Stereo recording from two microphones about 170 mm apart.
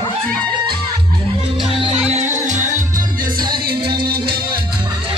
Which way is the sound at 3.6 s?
65° right (ahead or behind).